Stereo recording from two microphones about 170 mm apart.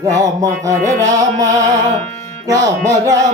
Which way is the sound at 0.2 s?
20° right (ahead or behind).